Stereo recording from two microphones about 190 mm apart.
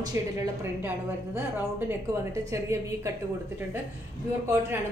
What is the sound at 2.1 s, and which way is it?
A woman's voice, 15° right (ahead or behind).